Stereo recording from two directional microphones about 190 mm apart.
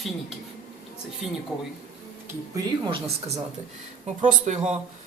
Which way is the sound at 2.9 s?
25° right (ahead or behind).